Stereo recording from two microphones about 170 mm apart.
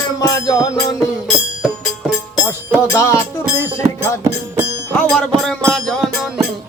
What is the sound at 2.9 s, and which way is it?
Music, 15° left (ahead or behind).